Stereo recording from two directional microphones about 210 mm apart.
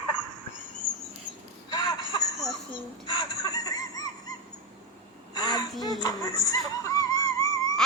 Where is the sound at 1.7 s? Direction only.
20° left (ahead or behind).